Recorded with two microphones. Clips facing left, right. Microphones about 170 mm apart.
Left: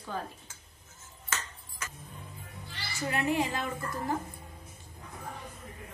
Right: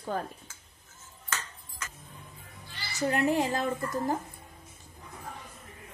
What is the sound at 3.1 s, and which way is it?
A woman's voice, 40° right (ahead or behind).